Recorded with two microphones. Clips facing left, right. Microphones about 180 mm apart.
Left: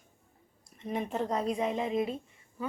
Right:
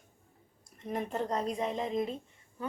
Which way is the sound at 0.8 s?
Centre (ahead or behind).